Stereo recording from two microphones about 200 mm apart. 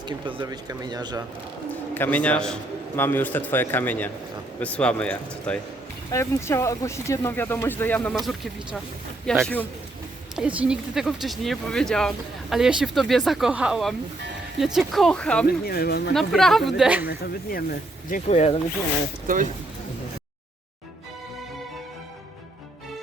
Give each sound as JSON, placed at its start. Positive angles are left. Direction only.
{"t": 0.0, "sound": "speech", "side_deg": -25}
{"t": 1.7, "sound": "a man's voice", "side_deg": 5}
{"t": 15.6, "sound": "speech", "side_deg": 50}
{"t": 16.1, "sound": "speech", "side_deg": 0}
{"t": 17.1, "sound": "speech", "side_deg": 50}
{"t": 18.3, "sound": "speech", "side_deg": 30}